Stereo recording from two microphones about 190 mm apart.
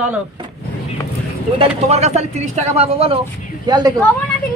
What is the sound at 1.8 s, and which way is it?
A man's voice, 35° right (ahead or behind).